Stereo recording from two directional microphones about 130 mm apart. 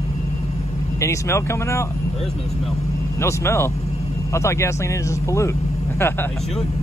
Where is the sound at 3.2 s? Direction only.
20° left (ahead or behind).